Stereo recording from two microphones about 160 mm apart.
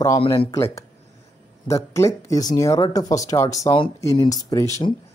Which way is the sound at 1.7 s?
15° left (ahead or behind).